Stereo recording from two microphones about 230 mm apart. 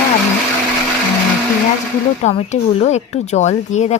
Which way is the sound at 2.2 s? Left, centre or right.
Left.